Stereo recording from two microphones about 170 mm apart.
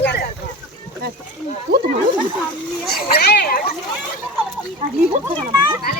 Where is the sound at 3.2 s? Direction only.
65° left (ahead or behind).